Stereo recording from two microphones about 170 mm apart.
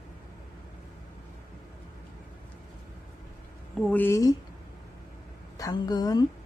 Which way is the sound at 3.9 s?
10° left (ahead or behind).